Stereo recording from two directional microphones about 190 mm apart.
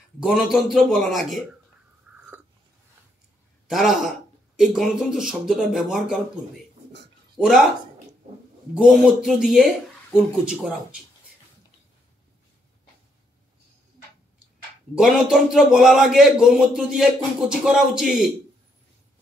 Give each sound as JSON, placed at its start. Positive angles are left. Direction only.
{"t": 0.2, "sound": "a man's voice", "side_deg": 0}
{"t": 3.6, "sound": "a man's voice", "side_deg": 0}
{"t": 7.3, "sound": "speech", "side_deg": 0}
{"t": 8.7, "sound": "a man's voice", "side_deg": 0}
{"t": 15.0, "sound": "a man's voice", "side_deg": -5}